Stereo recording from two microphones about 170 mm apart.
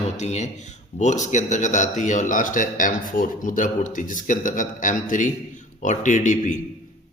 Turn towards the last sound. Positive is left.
turn(degrees=45)  # may be behind; listen again after turning